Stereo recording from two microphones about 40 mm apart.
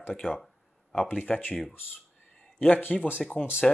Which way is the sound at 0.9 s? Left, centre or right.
Left.